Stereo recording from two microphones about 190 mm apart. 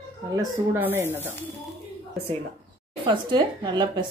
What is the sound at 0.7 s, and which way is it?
Speech, 10° right (ahead or behind).